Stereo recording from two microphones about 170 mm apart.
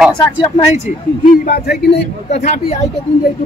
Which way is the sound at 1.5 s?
70° left (ahead or behind).